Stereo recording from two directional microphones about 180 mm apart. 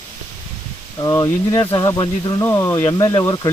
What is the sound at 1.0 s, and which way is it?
Speech, 20° left (ahead or behind).